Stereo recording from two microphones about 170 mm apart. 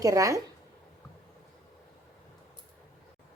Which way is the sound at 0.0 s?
20° right (ahead or behind).